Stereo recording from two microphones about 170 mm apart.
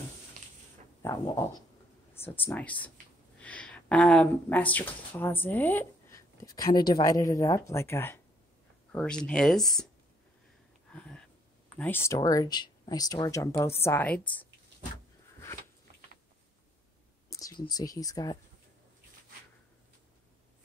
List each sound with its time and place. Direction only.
1.0 s speech: 20° left (ahead or behind)
2.1 s speech: 10° left (ahead or behind)
10.9 s a sound: 5° left (ahead or behind)
11.7 s speech: 10° left (ahead or behind)
17.3 s speech: 20° left (ahead or behind)